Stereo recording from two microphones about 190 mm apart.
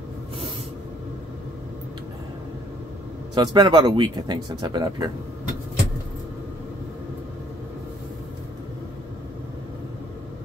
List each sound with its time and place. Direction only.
3.3 s speech: 20° right (ahead or behind)